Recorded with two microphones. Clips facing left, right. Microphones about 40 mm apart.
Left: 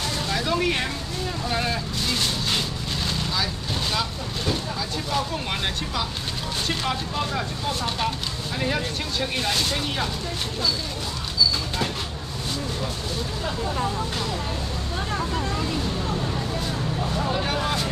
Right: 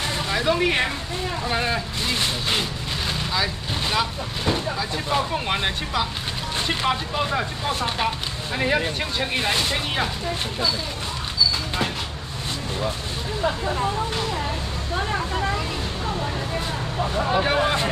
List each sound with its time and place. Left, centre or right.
0.3 s vehicle: centre
3.9 s speech: right
13.4 s speech: right
15.0 s vehicle: centre
17.2 s speech: right